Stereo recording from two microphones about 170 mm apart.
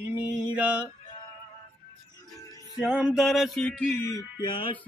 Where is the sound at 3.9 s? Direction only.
15° left (ahead or behind).